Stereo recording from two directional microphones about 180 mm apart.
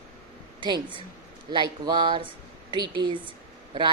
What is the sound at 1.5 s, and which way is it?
A woman's voice, 25° right (ahead or behind).